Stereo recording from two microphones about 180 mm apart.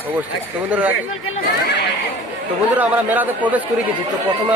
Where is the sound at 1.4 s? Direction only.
65° left (ahead or behind).